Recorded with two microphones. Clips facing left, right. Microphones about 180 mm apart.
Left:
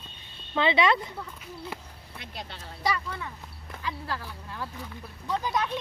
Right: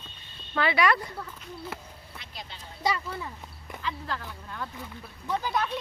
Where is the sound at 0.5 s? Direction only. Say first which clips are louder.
Left 1 dB; 20° left (ahead or behind).